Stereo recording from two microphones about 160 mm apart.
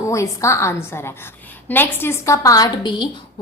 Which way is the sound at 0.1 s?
20° left (ahead or behind).